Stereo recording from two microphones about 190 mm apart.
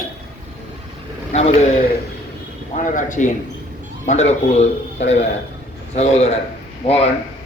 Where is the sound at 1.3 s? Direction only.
35° left (ahead or behind).